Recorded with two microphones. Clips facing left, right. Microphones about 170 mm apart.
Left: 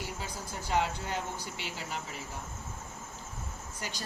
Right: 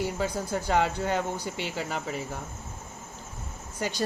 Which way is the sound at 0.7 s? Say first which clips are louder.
Right 5 dB; 60° right (ahead or behind).